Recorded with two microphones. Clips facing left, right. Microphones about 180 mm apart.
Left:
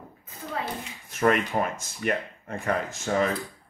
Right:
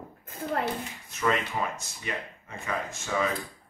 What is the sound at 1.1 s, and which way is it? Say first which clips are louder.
Speech: left 5 dB; 55° left (ahead or behind).